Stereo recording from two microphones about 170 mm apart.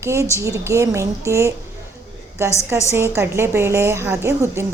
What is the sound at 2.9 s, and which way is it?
A woman's voice, 15° right (ahead or behind).